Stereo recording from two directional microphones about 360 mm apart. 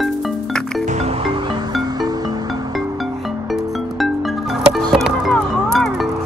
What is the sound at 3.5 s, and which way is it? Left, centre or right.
Music, centre.